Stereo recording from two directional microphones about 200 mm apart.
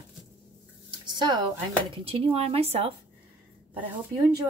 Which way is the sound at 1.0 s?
20° right (ahead or behind).